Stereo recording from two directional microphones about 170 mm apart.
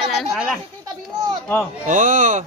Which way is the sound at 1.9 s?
50° right (ahead or behind).